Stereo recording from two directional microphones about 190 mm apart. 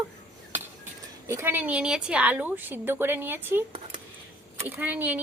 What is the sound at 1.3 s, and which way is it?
A woman's voice, 10° right (ahead or behind).